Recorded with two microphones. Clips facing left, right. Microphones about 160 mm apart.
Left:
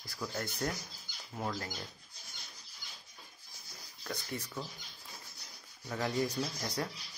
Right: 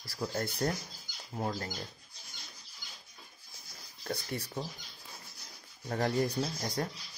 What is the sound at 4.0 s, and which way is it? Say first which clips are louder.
Speech: right 3 dB; 30° right (ahead or behind).